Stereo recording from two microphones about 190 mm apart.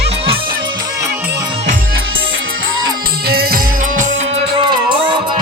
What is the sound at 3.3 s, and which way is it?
Music, 55° right (ahead or behind).